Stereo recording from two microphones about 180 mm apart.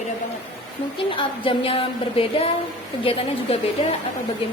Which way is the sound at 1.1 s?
30° left (ahead or behind).